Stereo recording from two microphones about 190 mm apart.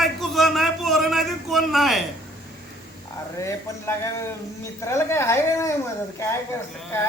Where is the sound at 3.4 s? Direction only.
15° left (ahead or behind).